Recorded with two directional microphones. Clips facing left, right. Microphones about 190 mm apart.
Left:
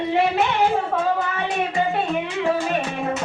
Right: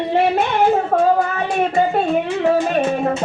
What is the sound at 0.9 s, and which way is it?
Child singing, 45° right (ahead or behind).